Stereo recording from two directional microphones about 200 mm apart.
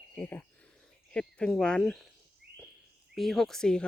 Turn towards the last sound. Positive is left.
turn(degrees=5)  # may be behind; listen again after turning